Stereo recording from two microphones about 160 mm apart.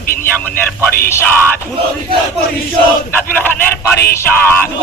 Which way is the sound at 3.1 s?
10° left (ahead or behind).